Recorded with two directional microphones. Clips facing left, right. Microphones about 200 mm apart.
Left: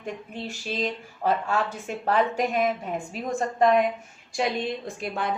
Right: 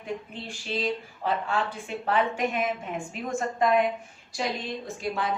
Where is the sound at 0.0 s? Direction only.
45° left (ahead or behind).